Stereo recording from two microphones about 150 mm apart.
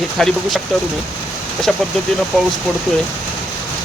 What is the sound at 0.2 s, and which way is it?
Speech, 5° left (ahead or behind).